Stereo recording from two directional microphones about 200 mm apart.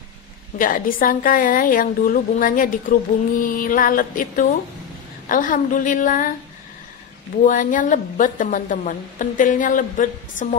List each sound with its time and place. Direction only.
0.6 s a woman's voice: 45° left (ahead or behind)
7.4 s a woman's voice: 40° left (ahead or behind)